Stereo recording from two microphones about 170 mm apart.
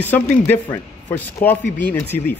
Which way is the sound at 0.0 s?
10° left (ahead or behind).